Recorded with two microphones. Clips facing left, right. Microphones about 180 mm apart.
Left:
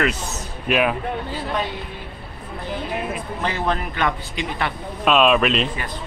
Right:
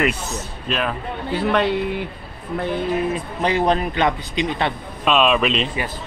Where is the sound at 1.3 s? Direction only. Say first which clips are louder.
Right 11 dB; 65° right (ahead or behind).